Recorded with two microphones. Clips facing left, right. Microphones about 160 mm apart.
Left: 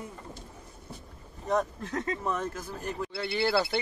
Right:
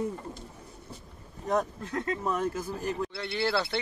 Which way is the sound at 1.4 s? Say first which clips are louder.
Even; centre (ahead or behind).